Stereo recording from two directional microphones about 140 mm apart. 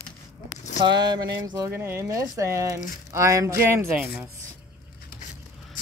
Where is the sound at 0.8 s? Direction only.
30° right (ahead or behind); by 4.3 s 10° right (ahead or behind).